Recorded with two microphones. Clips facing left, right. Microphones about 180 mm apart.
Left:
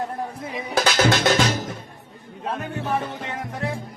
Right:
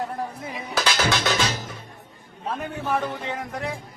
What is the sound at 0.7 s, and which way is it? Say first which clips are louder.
Music: left 4 dB; 50° left (ahead or behind).